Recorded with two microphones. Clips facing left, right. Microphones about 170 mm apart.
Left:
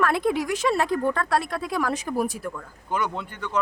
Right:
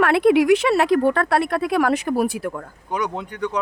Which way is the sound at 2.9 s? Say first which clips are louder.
Right 2 dB; 15° right (ahead or behind).